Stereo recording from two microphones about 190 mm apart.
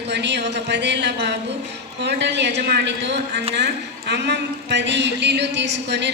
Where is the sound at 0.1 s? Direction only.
65° right (ahead or behind).